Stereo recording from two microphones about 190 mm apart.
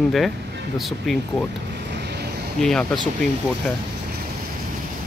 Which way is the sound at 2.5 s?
Centre (ahead or behind).